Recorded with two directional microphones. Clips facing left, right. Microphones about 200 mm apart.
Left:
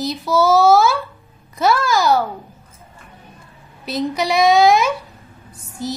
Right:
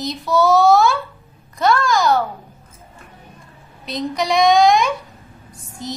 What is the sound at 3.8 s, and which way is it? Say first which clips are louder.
A woman's voice: left 2 dB; 5° left (ahead or behind).